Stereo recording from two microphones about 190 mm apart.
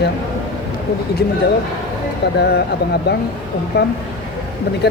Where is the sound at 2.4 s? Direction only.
60° left (ahead or behind).